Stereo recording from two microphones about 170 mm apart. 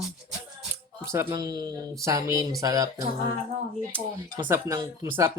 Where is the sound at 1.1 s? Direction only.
15° right (ahead or behind).